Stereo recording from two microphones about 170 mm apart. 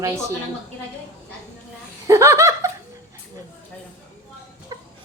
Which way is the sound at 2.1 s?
15° right (ahead or behind).